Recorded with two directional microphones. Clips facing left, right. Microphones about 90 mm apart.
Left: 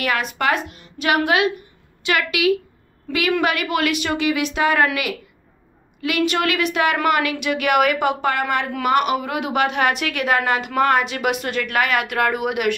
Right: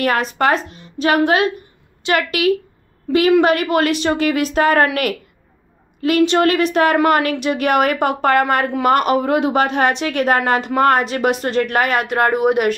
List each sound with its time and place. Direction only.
0.0 s speech: 35° right (ahead or behind)
6.0 s speech: 35° right (ahead or behind)